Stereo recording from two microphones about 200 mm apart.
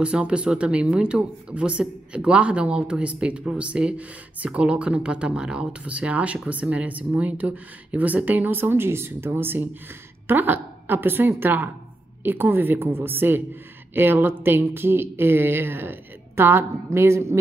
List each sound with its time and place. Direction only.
0.0 s a woman's voice: 5° right (ahead or behind)